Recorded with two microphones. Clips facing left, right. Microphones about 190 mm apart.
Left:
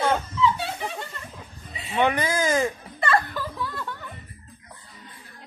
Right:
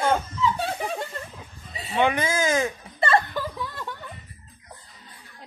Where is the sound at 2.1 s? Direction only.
5° right (ahead or behind).